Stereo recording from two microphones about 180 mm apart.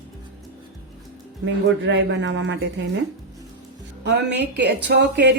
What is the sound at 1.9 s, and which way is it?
Speech, 90° right.